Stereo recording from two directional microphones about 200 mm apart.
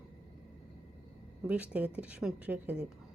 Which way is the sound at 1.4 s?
5° right (ahead or behind).